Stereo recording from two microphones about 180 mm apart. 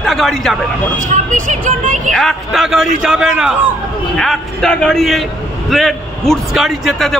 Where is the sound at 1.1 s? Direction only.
45° right (ahead or behind).